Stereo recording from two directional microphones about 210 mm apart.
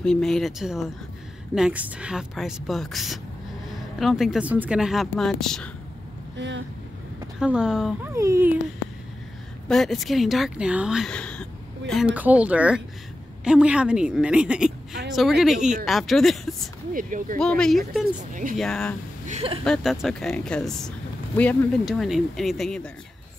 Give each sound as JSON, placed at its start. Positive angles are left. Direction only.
{"t": 0.0, "sound": "speech", "side_deg": 5}
{"t": 6.3, "sound": "speech", "side_deg": -60}
{"t": 7.3, "sound": "speech", "side_deg": -5}
{"t": 9.7, "sound": "speech", "side_deg": 0}
{"t": 16.9, "sound": "speech", "side_deg": -40}
{"t": 17.4, "sound": "speech", "side_deg": 5}
{"t": 18.3, "sound": "speech", "side_deg": -40}
{"t": 18.6, "sound": "speech", "side_deg": 5}
{"t": 19.2, "sound": "speech", "side_deg": -30}
{"t": 19.6, "sound": "speech", "side_deg": 0}